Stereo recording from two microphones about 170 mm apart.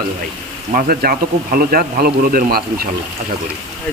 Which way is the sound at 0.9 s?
60° right (ahead or behind).